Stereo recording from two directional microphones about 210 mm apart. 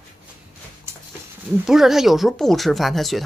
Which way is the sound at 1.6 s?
Centre (ahead or behind).